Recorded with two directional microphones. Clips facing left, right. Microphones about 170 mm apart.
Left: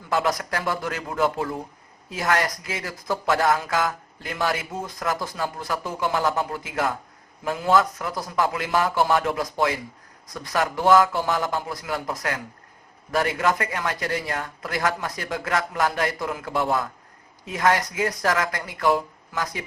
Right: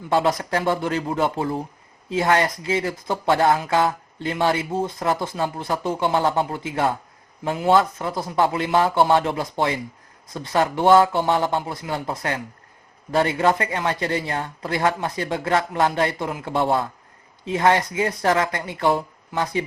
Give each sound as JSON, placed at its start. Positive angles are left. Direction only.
{"t": 0.1, "sound": "speech", "side_deg": -25}